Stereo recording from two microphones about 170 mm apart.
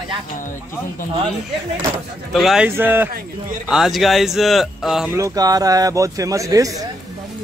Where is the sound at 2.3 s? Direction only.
Centre (ahead or behind).